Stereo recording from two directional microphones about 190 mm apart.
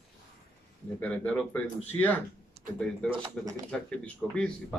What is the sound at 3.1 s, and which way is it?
Speech, 20° right (ahead or behind).